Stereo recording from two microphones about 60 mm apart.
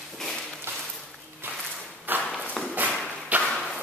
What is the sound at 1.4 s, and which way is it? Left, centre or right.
Walk, right.